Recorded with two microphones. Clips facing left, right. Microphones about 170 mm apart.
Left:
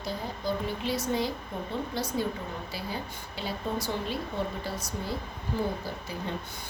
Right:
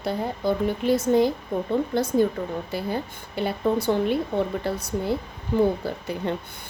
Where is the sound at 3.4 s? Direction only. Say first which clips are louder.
Right 9 dB; 60° right (ahead or behind).